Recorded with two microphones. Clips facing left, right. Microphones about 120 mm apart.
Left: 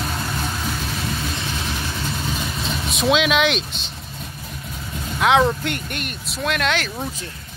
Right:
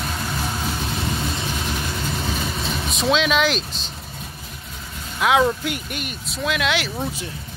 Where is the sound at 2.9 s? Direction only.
5° left (ahead or behind).